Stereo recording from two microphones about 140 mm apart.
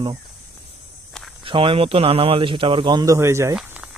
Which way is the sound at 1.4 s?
40° right (ahead or behind).